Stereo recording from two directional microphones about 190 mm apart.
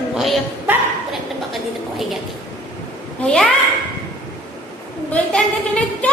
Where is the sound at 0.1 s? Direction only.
Centre (ahead or behind).